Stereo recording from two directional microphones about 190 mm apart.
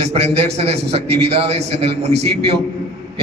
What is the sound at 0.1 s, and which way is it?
A man's voice, 35° right (ahead or behind).